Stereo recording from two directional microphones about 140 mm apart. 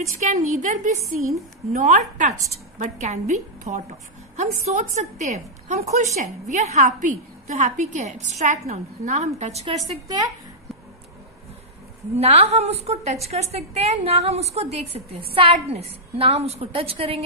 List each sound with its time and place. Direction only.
0.0 s a woman's voice: 55° right (ahead or behind)
12.2 s a woman's voice: 45° right (ahead or behind)